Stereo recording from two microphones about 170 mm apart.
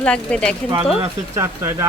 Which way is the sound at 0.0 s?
5° left (ahead or behind).